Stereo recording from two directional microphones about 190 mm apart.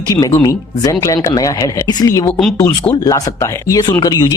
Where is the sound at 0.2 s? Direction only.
15° left (ahead or behind).